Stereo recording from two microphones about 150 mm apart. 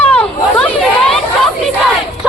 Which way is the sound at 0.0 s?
10° left (ahead or behind).